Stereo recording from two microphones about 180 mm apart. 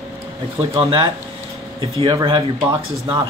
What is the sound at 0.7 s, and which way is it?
Speech, 30° right (ahead or behind).